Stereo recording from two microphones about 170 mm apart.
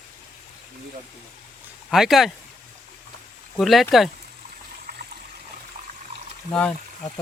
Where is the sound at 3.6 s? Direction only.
Centre (ahead or behind).